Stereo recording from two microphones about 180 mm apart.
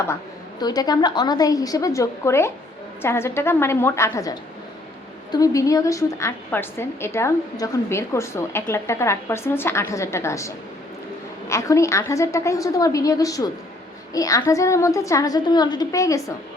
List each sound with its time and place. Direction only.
0.6 s a woman's voice: 20° left (ahead or behind)